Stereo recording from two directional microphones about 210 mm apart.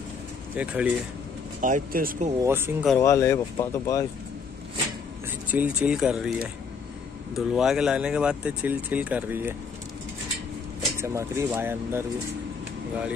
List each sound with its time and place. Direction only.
0.6 s speech: 5° right (ahead or behind)
1.6 s speech: 40° right (ahead or behind)
2.4 s speech: 10° right (ahead or behind)
3.0 s speech: 15° left (ahead or behind)
5.5 s speech: 5° right (ahead or behind)
11.0 s speech: 10° right (ahead or behind)